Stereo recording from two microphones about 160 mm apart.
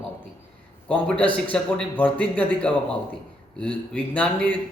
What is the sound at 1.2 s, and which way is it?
Speech, 10° left (ahead or behind).